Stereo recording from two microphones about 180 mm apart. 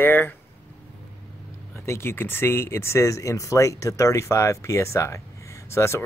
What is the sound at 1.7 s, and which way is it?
Speech, 15° left (ahead or behind).